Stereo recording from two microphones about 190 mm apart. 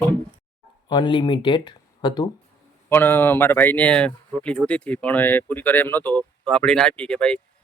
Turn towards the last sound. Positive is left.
turn(degrees=5)  # may be behind; listen again after turning